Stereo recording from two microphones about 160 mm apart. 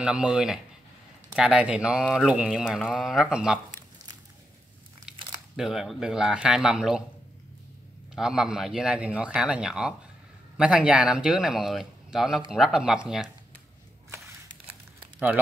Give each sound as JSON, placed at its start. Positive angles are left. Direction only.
{"t": 0.0, "sound": "speech", "side_deg": -5}
{"t": 5.1, "sound": "crumpling", "side_deg": -30}
{"t": 5.6, "sound": "speech", "side_deg": -5}
{"t": 8.1, "sound": "speech", "side_deg": -5}
{"t": 14.7, "sound": "crumpling", "side_deg": -10}